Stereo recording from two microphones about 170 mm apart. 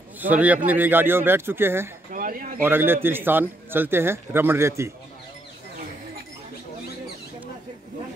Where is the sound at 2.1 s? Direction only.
55° right (ahead or behind).